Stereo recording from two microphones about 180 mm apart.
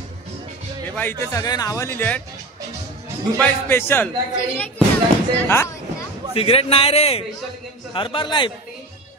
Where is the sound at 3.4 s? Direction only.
10° left (ahead or behind).